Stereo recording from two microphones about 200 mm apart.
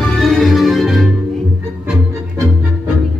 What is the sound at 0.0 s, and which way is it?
Music, centre (ahead or behind).